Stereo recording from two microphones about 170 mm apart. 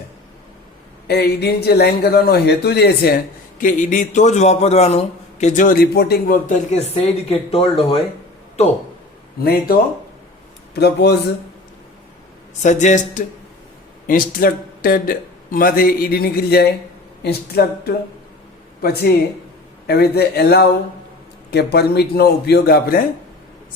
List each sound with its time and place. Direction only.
1.0 s a man's voice: 70° left (ahead or behind)
3.6 s a man's voice: 50° left (ahead or behind); by 8.0 s 35° left (ahead or behind)
9.4 s a man's voice: 65° left (ahead or behind)
10.8 s a man's voice: 75° left (ahead or behind)
12.6 s a man's voice: 45° left (ahead or behind)
14.1 s a man's voice: 55° left (ahead or behind)
18.8 s a man's voice: 65° left (ahead or behind)